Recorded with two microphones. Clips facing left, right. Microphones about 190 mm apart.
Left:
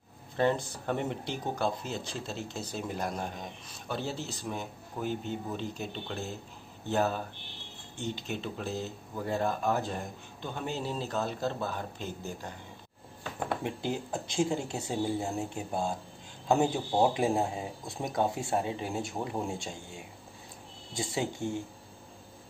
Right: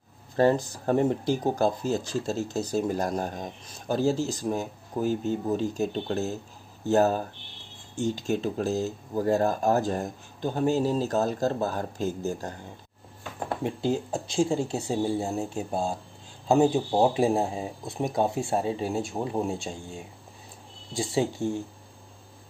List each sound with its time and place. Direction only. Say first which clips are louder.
0.4 s speech: right 6 dB; 40° right (ahead or behind)
14.3 s speech: right 5 dB; 25° right (ahead or behind)
20.9 s speech: right 6 dB; 25° right (ahead or behind)